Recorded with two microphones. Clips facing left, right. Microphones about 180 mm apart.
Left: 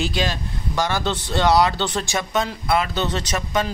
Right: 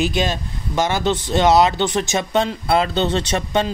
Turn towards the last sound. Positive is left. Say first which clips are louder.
# right 4 dB
turn(degrees=-30)  # may be behind; listen again after turning